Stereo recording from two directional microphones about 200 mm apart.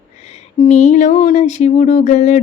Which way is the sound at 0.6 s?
35° left (ahead or behind).